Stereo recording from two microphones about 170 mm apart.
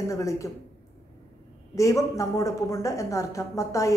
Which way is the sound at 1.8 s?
20° left (ahead or behind).